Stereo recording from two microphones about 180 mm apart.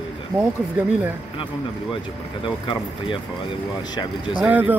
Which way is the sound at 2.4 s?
30° left (ahead or behind).